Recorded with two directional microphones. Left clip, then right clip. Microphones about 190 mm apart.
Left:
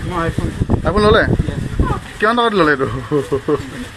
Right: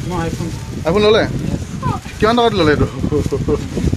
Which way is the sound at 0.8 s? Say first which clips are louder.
Even; centre (ahead or behind).